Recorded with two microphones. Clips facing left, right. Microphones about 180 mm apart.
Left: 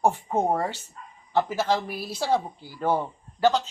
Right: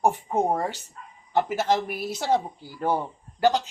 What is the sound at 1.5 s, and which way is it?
Speech, 20° right (ahead or behind).